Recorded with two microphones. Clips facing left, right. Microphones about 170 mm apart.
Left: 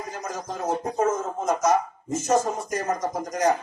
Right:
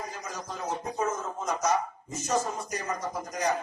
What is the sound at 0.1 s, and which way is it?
Music, 50° left (ahead or behind).